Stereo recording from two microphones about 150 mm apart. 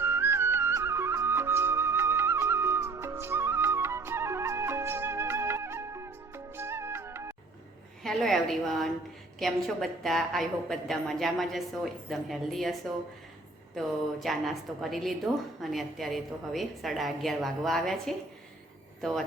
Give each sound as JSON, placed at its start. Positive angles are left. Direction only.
{"t": 0.0, "sound": "music", "side_deg": -15}
{"t": 8.0, "sound": "a woman's voice", "side_deg": 0}
{"t": 13.7, "sound": "a woman's voice", "side_deg": 0}